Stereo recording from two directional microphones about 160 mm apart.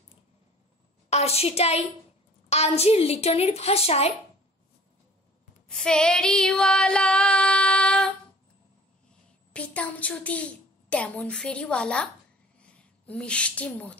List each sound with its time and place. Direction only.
1.1 s a woman's voice: 40° left (ahead or behind)
5.7 s female singing: 5° left (ahead or behind)
9.5 s a woman's voice: 10° left (ahead or behind)
12.5 s a sound: 5° left (ahead or behind)